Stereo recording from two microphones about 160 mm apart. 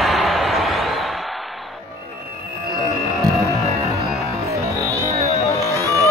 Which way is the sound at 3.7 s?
40° right (ahead or behind).